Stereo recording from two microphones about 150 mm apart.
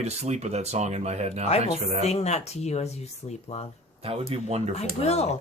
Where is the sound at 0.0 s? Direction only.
45° right (ahead or behind).